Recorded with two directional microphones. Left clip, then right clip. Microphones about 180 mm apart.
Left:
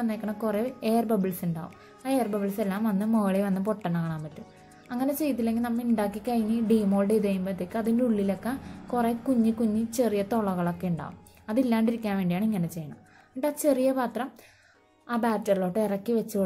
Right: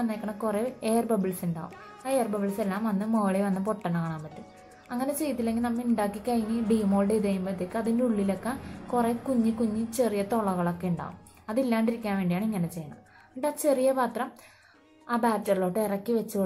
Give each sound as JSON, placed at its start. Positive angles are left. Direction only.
{"t": 0.0, "sound": "a woman's voice", "side_deg": 35}